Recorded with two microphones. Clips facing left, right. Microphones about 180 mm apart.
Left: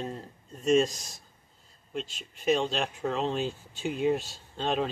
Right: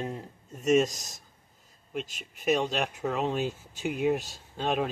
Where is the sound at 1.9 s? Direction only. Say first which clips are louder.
Even; 10° right (ahead or behind).